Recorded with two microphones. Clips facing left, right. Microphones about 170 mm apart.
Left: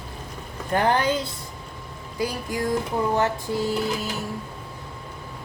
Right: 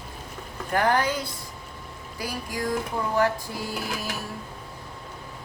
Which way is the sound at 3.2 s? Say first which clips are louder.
Left 1 dB; 25° left (ahead or behind).